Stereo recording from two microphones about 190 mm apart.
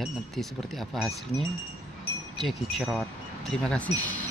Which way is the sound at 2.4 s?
Centre (ahead or behind).